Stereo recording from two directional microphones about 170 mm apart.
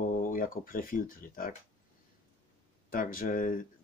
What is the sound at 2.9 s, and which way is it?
Speech, 55° left (ahead or behind).